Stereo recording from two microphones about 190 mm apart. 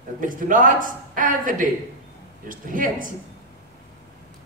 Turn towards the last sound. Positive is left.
turn(degrees=-45)  # may be behind; listen again after turning